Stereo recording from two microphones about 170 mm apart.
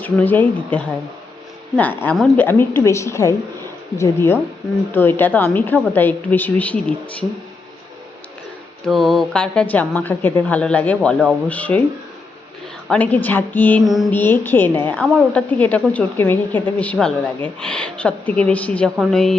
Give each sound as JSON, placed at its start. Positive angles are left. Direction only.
{"t": 0.0, "sound": "a woman's voice", "side_deg": 10}
{"t": 2.1, "sound": "a woman's voice", "side_deg": 0}
{"t": 2.4, "sound": "a woman's voice", "side_deg": 15}
{"t": 8.9, "sound": "a woman's voice", "side_deg": 0}
{"t": 12.9, "sound": "a woman's voice", "side_deg": 10}
{"t": 13.8, "sound": "a woman's voice", "side_deg": 0}
{"t": 14.1, "sound": "a woman's voice", "side_deg": 10}